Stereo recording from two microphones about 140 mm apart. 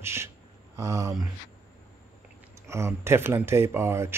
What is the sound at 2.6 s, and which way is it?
Speech, 20° right (ahead or behind).